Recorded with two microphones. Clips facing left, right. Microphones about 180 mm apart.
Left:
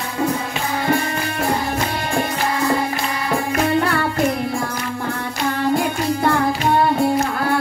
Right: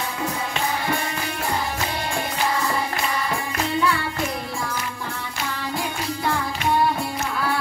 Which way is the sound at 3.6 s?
60° left (ahead or behind).